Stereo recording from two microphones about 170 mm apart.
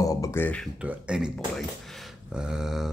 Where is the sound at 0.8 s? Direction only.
5° right (ahead or behind).